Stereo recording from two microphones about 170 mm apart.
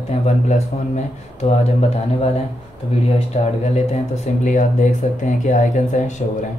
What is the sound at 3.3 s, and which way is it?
Speech, 40° left (ahead or behind).